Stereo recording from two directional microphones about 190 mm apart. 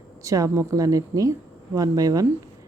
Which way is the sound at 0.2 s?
15° right (ahead or behind).